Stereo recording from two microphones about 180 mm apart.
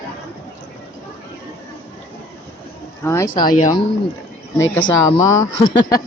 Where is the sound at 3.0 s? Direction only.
15° left (ahead or behind).